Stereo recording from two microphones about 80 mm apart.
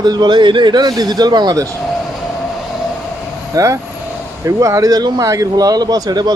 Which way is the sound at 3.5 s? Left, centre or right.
Right.